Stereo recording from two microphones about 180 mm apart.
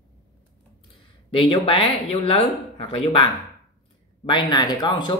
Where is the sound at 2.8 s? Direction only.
30° left (ahead or behind).